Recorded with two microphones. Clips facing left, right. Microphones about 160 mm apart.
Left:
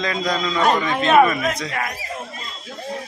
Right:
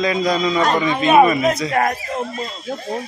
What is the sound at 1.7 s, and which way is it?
Speech, 45° right (ahead or behind).